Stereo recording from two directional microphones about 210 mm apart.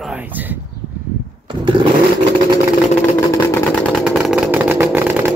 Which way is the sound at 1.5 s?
25° right (ahead or behind).